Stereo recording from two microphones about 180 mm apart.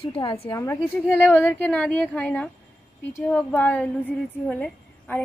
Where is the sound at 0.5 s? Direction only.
15° left (ahead or behind).